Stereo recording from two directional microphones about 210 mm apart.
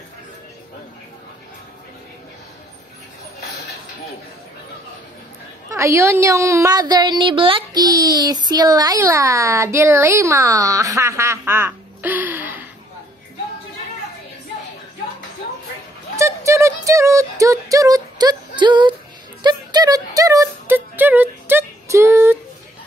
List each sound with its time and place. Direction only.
3.3 s a sound: 55° left (ahead or behind)
5.7 s a woman's voice: 15° right (ahead or behind)
16.2 s music: 15° right (ahead or behind)